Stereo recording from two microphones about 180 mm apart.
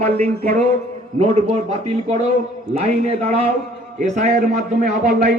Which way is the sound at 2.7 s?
35° right (ahead or behind).